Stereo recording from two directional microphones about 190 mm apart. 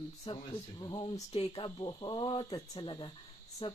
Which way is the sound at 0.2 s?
25° left (ahead or behind).